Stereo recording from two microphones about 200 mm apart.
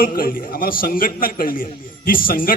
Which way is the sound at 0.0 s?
45° left (ahead or behind).